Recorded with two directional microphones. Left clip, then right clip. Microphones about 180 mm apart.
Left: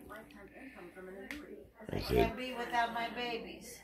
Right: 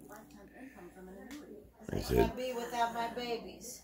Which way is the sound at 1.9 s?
20° right (ahead or behind).